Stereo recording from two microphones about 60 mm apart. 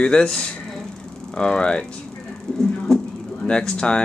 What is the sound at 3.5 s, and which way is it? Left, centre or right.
Speech, centre.